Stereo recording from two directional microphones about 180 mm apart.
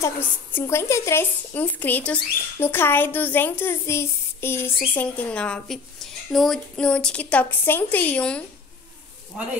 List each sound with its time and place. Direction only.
0.0 s a woman's voice: 15° left (ahead or behind)